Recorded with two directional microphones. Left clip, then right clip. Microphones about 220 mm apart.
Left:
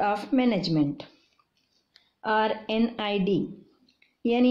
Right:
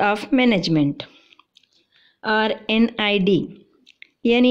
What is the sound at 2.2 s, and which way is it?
Speech, 45° right (ahead or behind).